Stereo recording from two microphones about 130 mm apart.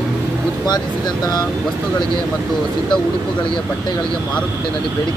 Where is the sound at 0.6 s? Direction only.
30° left (ahead or behind).